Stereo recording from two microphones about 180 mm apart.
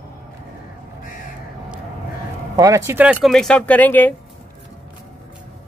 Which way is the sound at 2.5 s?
20° right (ahead or behind).